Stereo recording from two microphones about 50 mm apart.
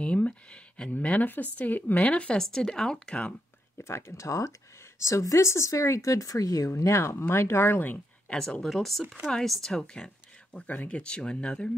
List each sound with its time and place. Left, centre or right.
0.0 s a sound: left
0.9 s speech: left
2.0 s speech: left
2.3 s speech: centre
3.2 s a sound: left
3.8 s speech: left
7.7 s speech: left
8.6 s speech: centre
10.7 s speech: left